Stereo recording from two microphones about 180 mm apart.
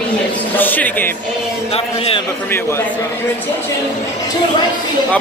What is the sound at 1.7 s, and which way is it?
Speech, 35° left (ahead or behind).